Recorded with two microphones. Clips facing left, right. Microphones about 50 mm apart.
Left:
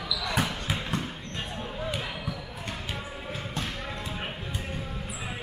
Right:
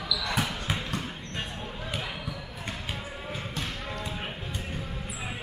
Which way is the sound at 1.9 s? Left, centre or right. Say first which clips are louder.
Left 1 dB; centre.